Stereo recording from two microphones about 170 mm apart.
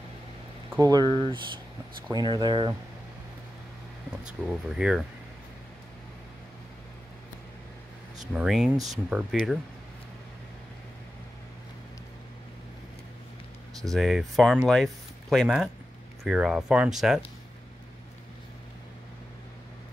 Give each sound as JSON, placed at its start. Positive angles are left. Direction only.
{"t": 0.7, "sound": "speech", "side_deg": -20}
{"t": 4.5, "sound": "speech", "side_deg": -5}
{"t": 8.2, "sound": "speech", "side_deg": 0}
{"t": 13.8, "sound": "speech", "side_deg": 0}